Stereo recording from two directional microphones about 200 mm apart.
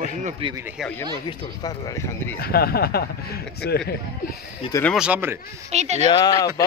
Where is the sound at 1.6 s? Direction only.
15° left (ahead or behind).